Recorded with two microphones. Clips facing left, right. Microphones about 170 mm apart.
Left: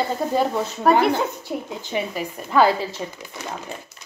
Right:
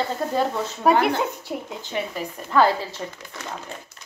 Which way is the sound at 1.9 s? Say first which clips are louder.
Left 2 dB; 10° left (ahead or behind).